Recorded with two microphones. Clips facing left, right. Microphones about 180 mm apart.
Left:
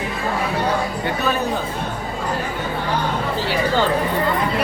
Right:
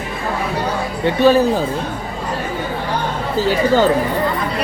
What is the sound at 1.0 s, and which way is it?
Speech, 30° right (ahead or behind).